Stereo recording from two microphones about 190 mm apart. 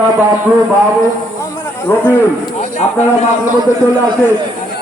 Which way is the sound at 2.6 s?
35° left (ahead or behind).